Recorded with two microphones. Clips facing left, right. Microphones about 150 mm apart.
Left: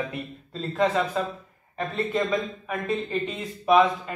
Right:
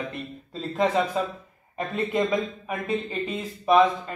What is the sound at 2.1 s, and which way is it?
Speech, 5° right (ahead or behind).